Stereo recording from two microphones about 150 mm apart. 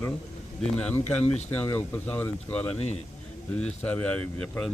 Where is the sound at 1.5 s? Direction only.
10° left (ahead or behind).